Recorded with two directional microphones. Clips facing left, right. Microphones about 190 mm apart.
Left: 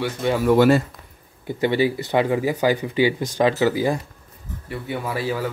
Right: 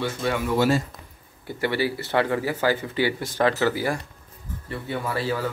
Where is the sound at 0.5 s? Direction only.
60° left (ahead or behind).